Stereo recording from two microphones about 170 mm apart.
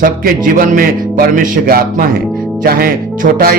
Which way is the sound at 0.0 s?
55° right (ahead or behind).